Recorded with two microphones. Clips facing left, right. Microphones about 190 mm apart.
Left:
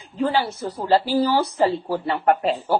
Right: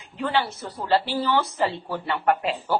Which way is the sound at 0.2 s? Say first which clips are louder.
Left 4 dB; 35° left (ahead or behind).